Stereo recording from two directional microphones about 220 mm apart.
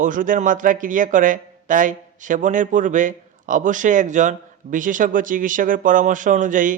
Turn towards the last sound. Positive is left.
turn(degrees=-35)  # may be behind; listen again after turning